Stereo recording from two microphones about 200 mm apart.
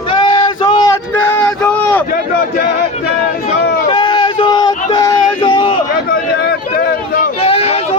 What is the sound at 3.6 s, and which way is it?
Run, 55° left (ahead or behind).